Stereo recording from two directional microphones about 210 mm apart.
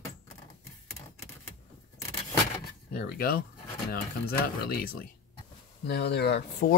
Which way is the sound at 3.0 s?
45° left (ahead or behind).